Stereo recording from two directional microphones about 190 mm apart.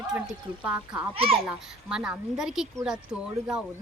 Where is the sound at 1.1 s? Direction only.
30° right (ahead or behind).